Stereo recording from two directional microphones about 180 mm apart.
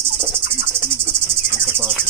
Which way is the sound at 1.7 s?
10° right (ahead or behind).